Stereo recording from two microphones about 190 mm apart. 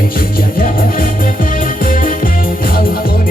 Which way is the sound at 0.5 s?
50° left (ahead or behind).